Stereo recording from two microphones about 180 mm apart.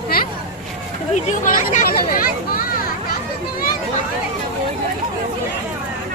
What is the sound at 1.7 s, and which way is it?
Speech, 55° left (ahead or behind).